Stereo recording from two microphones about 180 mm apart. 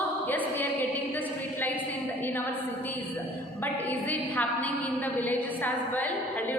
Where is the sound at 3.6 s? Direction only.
10° left (ahead or behind).